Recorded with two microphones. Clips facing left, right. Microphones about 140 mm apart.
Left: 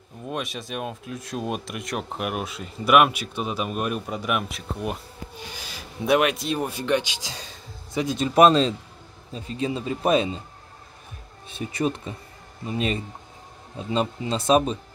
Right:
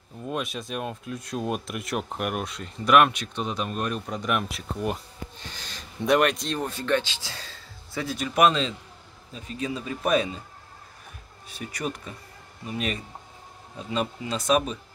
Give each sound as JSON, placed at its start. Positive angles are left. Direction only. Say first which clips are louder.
{"t": 0.2, "sound": "speech", "louder": "even", "side_deg": 0}
{"t": 8.4, "sound": "a man's voice", "louder": "left 5 dB", "side_deg": 35}
{"t": 11.4, "sound": "a man's voice", "louder": "left 6 dB", "side_deg": 25}